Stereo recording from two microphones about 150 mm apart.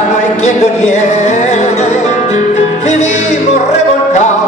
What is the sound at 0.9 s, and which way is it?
Music, 50° left (ahead or behind).